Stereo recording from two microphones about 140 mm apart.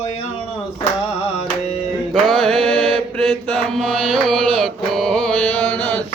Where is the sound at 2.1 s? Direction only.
5° left (ahead or behind).